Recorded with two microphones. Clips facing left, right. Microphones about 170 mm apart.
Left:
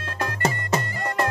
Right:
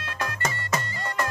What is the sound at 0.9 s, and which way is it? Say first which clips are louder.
Music: left 4 dB; 60° left (ahead or behind).